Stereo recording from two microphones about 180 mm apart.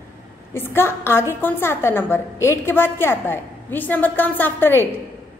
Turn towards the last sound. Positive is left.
turn(degrees=10)  # may be behind; listen again after turning